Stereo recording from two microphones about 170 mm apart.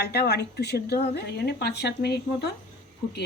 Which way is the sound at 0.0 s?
75° left (ahead or behind).